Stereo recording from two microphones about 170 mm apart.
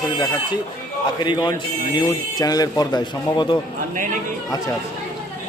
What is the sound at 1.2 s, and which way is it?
A man's voice, 25° left (ahead or behind).